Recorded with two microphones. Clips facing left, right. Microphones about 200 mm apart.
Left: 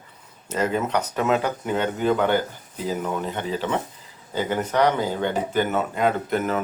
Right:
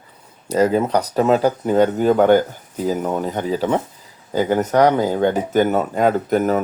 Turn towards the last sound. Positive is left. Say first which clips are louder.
# right 6 dB
turn(degrees=-40)  # may be behind; listen again after turning